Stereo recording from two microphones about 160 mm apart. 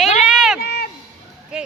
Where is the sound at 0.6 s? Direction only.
80° left.